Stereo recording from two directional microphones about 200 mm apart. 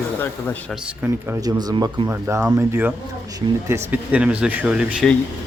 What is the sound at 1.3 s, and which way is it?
Speech, 15° right (ahead or behind).